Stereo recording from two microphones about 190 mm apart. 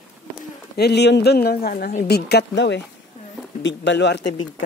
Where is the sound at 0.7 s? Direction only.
60° left (ahead or behind).